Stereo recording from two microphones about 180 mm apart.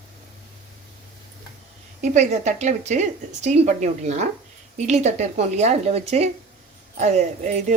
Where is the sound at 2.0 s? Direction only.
40° right (ahead or behind).